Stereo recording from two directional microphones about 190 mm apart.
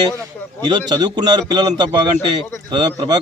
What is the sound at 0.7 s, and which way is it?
Speech, 25° right (ahead or behind).